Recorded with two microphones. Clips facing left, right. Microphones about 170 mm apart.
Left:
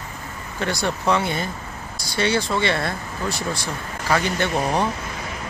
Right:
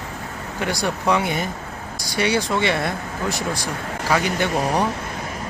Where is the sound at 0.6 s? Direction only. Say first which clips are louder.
Even; 15° right (ahead or behind).